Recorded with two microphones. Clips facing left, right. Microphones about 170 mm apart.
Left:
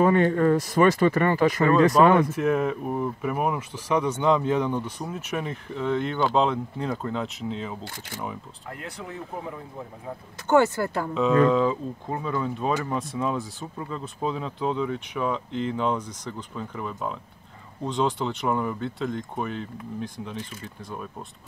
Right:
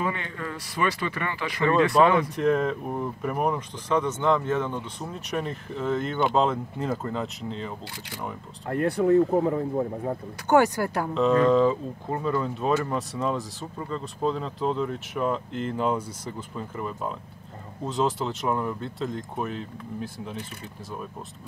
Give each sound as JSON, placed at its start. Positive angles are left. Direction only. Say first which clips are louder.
{"t": 0.0, "sound": "speech", "louder": "left 11 dB", "side_deg": 45}
{"t": 2.2, "sound": "speech", "louder": "even", "side_deg": 5}
{"t": 8.6, "sound": "speech", "louder": "right 15 dB", "side_deg": -60}
{"t": 9.1, "sound": "speech", "louder": "right 15 dB", "side_deg": -40}
{"t": 10.5, "sound": "speech", "louder": "even", "side_deg": -15}
{"t": 11.1, "sound": "speech", "louder": "even", "side_deg": 0}